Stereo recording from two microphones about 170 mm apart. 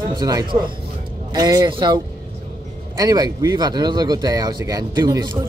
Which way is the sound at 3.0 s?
20° right (ahead or behind).